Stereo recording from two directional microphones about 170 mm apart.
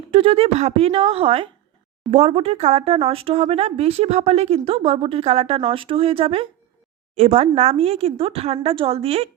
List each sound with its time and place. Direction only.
0.1 s speech: 35° right (ahead or behind)